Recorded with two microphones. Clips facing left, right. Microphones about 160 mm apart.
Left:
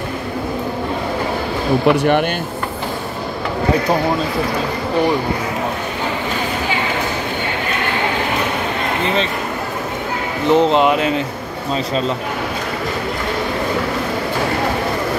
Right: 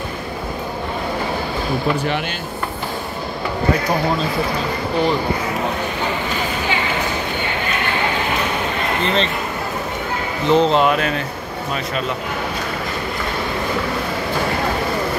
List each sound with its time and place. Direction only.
1.9 s speech: 55° left (ahead or behind)
9.0 s speech: 15° left (ahead or behind)
10.5 s speech: 15° left (ahead or behind)